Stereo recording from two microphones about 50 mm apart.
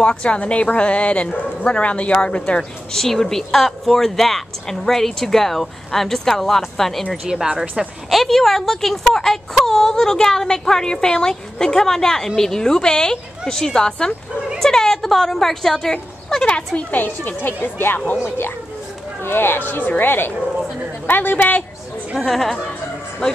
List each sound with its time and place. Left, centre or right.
0.0 s speech: left
2.9 s a woman's voice: centre
16.9 s speech: left
19.2 s speech: left
22.1 s speech: centre